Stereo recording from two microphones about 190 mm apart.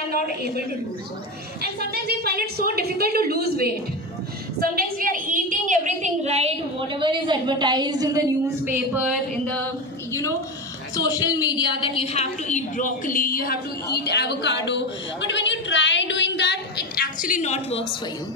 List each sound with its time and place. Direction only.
0.1 s a woman's voice: 55° right (ahead or behind)
4.6 s a sound: 50° right (ahead or behind); by 8.2 s 20° right (ahead or behind)
8.6 s a woman's voice: 10° right (ahead or behind)
11.0 s a woman's voice: 20° left (ahead or behind); by 17.8 s 35° left (ahead or behind)